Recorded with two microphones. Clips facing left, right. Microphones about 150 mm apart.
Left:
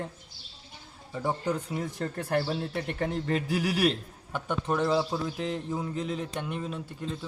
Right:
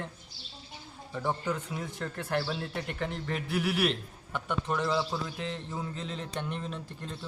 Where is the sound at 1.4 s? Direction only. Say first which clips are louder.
Left 3 dB; 35° left (ahead or behind).